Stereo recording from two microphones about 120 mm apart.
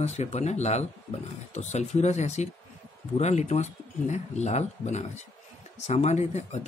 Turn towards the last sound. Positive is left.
turn(degrees=70)  # may be behind; listen again after turning